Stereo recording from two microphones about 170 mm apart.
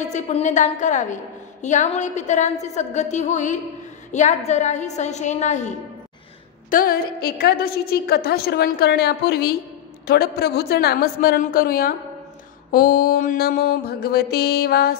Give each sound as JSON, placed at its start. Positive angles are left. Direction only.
{"t": 0.0, "sound": "a woman's voice", "side_deg": 45}
{"t": 6.7, "sound": "a woman's voice", "side_deg": 60}